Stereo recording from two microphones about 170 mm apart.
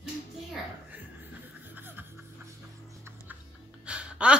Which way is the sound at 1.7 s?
10° right (ahead or behind).